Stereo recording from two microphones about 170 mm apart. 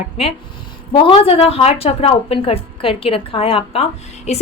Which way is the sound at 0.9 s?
30° left (ahead or behind).